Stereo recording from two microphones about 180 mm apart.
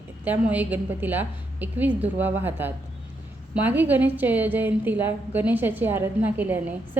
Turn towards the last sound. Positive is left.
turn(degrees=-10)  # may be behind; listen again after turning